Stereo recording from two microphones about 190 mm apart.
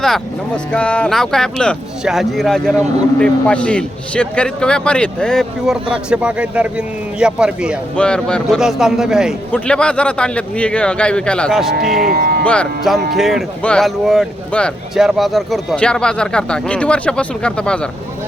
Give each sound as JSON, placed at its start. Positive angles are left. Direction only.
{"t": 0.0, "sound": "a man's voice", "side_deg": 5}
{"t": 11.9, "sound": "speech", "side_deg": -50}
{"t": 12.5, "sound": "a man's voice", "side_deg": 5}